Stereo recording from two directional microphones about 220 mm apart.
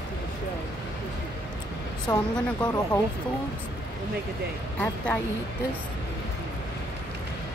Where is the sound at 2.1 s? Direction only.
20° left (ahead or behind).